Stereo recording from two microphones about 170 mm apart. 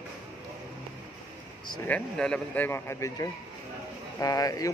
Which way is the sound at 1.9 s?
5° left (ahead or behind).